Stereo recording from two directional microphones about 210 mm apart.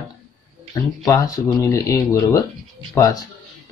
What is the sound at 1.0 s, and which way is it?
Speech, 15° left (ahead or behind).